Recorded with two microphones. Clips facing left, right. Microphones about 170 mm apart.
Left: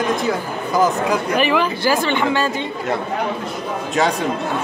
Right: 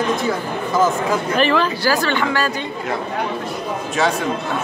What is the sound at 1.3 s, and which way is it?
Speech, 15° left (ahead or behind).